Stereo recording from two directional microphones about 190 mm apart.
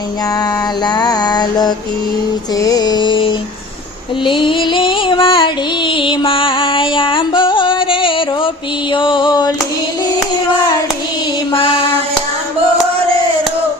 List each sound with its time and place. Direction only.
0.9 s music: 20° left (ahead or behind)
11.5 s child singing: 30° left (ahead or behind)